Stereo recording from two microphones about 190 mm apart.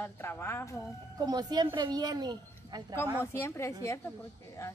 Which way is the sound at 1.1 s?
20° right (ahead or behind).